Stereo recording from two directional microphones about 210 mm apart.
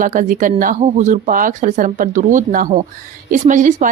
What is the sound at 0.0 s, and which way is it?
A woman's voice, 40° right (ahead or behind).